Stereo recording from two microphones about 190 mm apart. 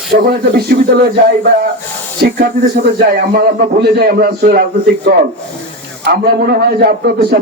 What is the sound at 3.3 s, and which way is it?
A man's voice, 55° right (ahead or behind).